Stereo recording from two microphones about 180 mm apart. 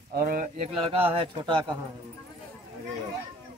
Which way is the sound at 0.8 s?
30° right (ahead or behind).